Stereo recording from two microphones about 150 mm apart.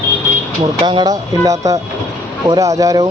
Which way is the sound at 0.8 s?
30° right (ahead or behind).